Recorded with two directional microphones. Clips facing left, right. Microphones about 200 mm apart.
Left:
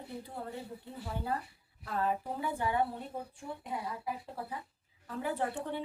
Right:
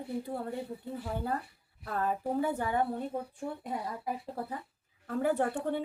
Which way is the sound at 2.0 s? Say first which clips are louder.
Right 4 dB; 45° right (ahead or behind).